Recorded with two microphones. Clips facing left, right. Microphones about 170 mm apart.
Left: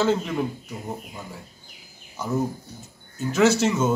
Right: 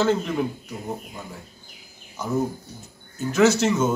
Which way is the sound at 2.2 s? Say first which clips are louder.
Even; 10° left (ahead or behind).